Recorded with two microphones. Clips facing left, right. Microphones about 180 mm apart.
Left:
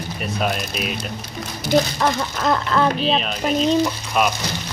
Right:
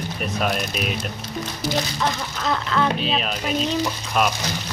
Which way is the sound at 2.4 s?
45° left (ahead or behind).